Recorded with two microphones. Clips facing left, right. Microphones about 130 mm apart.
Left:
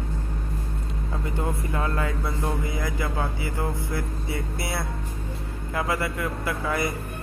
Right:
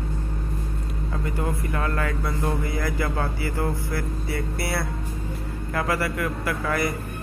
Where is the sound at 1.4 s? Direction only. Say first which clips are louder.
Even; 20° left (ahead or behind).